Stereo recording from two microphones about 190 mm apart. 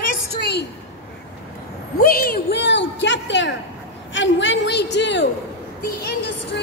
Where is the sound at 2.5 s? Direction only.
70° left (ahead or behind).